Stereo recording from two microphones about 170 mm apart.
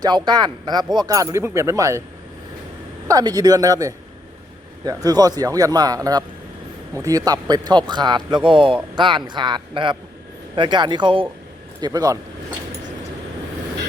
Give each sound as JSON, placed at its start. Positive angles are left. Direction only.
{"t": 0.0, "sound": "speech", "side_deg": -25}
{"t": 3.1, "sound": "speech", "side_deg": -20}